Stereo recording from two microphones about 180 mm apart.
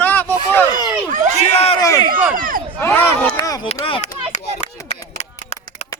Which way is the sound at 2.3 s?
50° right (ahead or behind).